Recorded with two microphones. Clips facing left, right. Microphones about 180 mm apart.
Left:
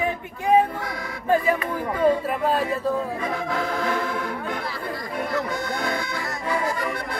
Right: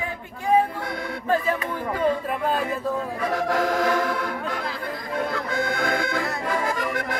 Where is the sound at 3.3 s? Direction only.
85° right.